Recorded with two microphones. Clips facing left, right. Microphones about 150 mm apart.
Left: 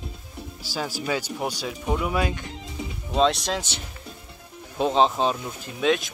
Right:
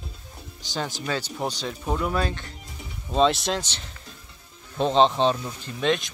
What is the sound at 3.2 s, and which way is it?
Speech, centre (ahead or behind).